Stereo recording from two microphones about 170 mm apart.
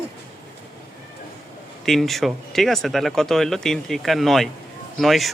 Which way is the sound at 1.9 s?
Centre (ahead or behind).